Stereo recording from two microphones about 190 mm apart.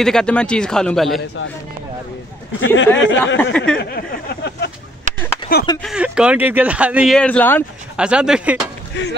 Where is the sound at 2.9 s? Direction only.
75° left (ahead or behind).